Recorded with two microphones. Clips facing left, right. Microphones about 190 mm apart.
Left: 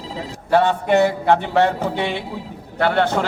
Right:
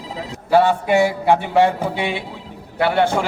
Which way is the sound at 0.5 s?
10° right (ahead or behind).